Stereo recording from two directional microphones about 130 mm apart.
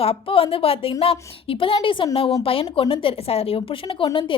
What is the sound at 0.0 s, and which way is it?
A woman's voice, 45° left (ahead or behind).